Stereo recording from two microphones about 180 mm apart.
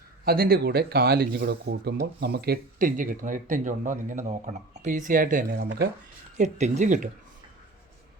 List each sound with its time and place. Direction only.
0.3 s speech: 55° right (ahead or behind)
6.3 s speech: 40° right (ahead or behind)